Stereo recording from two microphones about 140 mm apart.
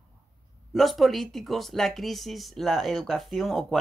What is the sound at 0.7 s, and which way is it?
Speech, centre (ahead or behind).